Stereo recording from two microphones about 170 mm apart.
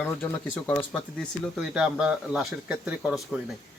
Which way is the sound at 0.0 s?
10° left (ahead or behind).